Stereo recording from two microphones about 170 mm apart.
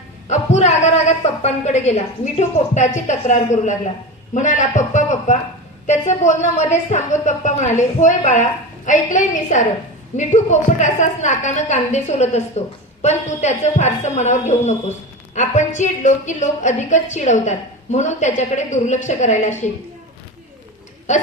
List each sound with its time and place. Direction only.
0.3 s a woman's voice: 40° left (ahead or behind)